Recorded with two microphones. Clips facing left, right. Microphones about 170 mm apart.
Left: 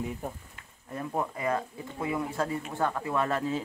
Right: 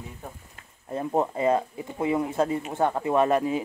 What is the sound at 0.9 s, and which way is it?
Speech, 30° right (ahead or behind).